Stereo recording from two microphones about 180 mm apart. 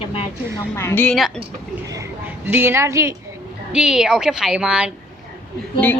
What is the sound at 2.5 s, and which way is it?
Speech, 10° right (ahead or behind).